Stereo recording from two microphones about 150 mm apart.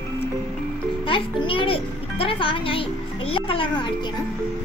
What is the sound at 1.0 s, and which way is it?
A child's voice, 35° left (ahead or behind).